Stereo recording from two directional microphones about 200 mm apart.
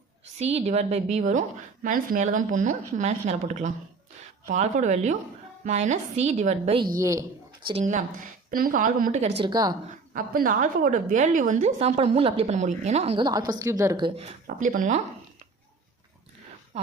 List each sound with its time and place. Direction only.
0.3 s a woman's voice: 30° right (ahead or behind)
7.0 s speech: 15° right (ahead or behind)
7.7 s a woman's voice: 35° right (ahead or behind)
10.2 s a woman's voice: 45° right (ahead or behind); by 14.3 s 25° right (ahead or behind)
14.4 s a woman's voice: 45° right (ahead or behind)
16.7 s speech: 30° right (ahead or behind)